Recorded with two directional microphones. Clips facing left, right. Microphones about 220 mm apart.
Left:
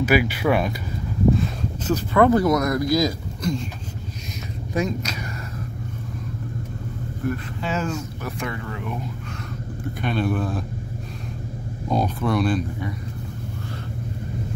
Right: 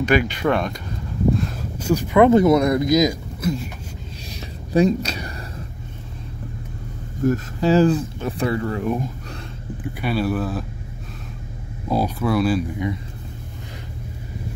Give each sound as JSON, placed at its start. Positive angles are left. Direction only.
{"t": 0.0, "sound": "speech", "side_deg": 5}
{"t": 1.9, "sound": "speech", "side_deg": -15}
{"t": 3.4, "sound": "a sound", "side_deg": -5}
{"t": 4.7, "sound": "speech", "side_deg": -30}
{"t": 7.2, "sound": "speech", "side_deg": -35}
{"t": 10.0, "sound": "speech", "side_deg": -5}
{"t": 11.9, "sound": "speech", "side_deg": -5}